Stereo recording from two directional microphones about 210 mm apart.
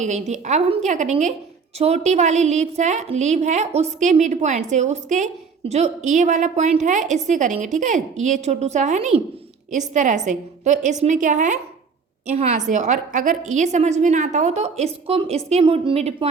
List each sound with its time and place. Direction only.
0.0 s a woman's voice: 35° right (ahead or behind)